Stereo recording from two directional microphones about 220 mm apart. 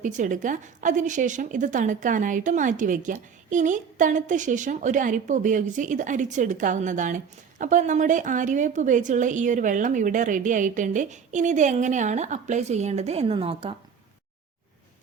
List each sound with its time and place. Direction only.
0.0 s a woman's voice: 35° right (ahead or behind)